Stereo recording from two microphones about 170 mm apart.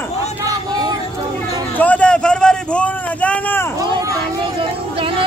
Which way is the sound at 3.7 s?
25° right (ahead or behind).